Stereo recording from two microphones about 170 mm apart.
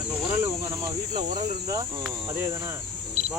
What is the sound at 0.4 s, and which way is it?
Cricket, 15° right (ahead or behind).